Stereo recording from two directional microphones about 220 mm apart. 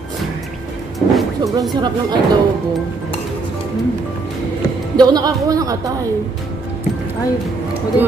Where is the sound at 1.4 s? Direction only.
15° right (ahead or behind).